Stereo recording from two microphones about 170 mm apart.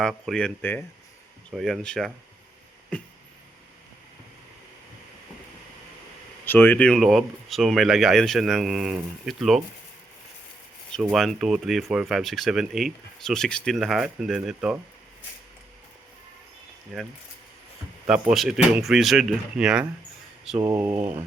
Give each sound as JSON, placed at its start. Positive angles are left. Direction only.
{"t": 0.0, "sound": "speech", "side_deg": 0}
{"t": 1.5, "sound": "speech", "side_deg": 0}
{"t": 2.9, "sound": "a sound", "side_deg": 5}
{"t": 6.4, "sound": "speech", "side_deg": 10}
{"t": 10.9, "sound": "speech", "side_deg": 5}
{"t": 18.0, "sound": "speech", "side_deg": -5}